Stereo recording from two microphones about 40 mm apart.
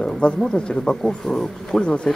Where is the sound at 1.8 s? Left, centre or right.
Left.